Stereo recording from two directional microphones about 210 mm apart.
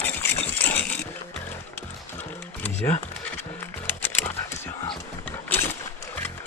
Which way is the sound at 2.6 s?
30° left (ahead or behind).